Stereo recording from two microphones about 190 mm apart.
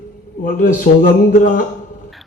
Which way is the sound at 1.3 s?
50° left (ahead or behind).